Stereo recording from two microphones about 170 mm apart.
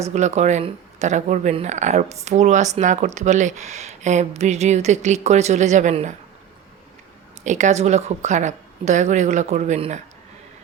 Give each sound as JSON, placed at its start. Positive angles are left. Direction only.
{"t": 0.1, "sound": "speech", "side_deg": -45}
{"t": 7.4, "sound": "speech", "side_deg": -45}